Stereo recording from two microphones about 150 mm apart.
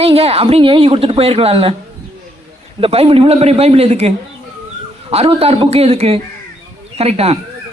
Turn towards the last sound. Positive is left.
turn(degrees=-45)  # may be behind; listen again after turning